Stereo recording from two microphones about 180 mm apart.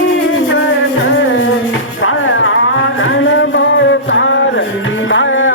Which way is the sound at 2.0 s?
90° left.